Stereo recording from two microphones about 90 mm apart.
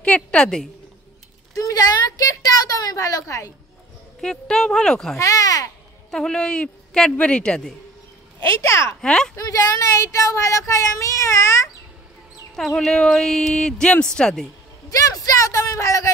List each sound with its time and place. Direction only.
0.0 s speech: 15° left (ahead or behind)
1.5 s a sound: 40° left (ahead or behind)
4.2 s speech: 5° left (ahead or behind)
5.1 s speech: 35° left (ahead or behind)
6.0 s speech: 5° left (ahead or behind)
8.5 s speech: 30° left (ahead or behind)
9.0 s speech: 5° left (ahead or behind)
9.4 s speech: 40° left (ahead or behind)
12.5 s speech: 5° left (ahead or behind)
14.9 s speech: 40° left (ahead or behind)